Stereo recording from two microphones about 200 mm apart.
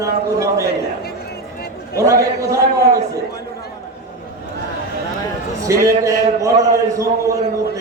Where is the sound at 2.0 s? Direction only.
15° right (ahead or behind).